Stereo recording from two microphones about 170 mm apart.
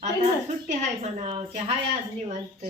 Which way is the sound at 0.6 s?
45° right (ahead or behind).